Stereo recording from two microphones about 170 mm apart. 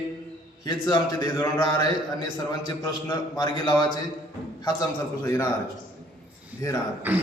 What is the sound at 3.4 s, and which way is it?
Speech, 25° left (ahead or behind).